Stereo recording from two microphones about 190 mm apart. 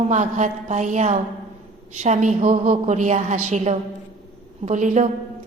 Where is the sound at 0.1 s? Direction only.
40° right (ahead or behind).